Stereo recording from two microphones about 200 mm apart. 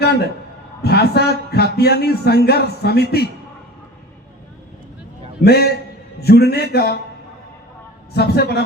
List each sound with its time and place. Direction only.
0.8 s a man's voice: 55° left (ahead or behind)
5.4 s a man's voice: 55° left (ahead or behind)
8.1 s a man's voice: 55° left (ahead or behind)